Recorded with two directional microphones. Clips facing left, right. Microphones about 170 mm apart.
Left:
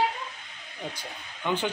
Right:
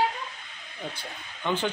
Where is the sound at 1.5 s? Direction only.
10° left (ahead or behind).